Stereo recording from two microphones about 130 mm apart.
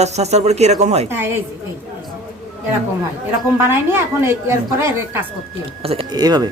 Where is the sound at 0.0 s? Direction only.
55° right (ahead or behind).